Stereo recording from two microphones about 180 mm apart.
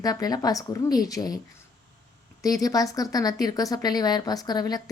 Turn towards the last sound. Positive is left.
turn(degrees=20)  # may be behind; listen again after turning